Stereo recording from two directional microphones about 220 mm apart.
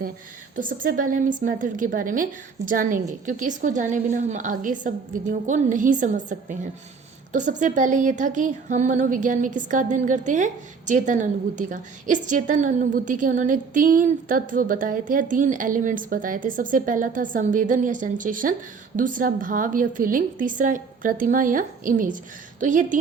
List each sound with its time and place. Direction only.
0.5 s speech: 40° right (ahead or behind)